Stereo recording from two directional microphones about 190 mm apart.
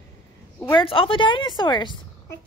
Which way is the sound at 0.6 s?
20° left (ahead or behind).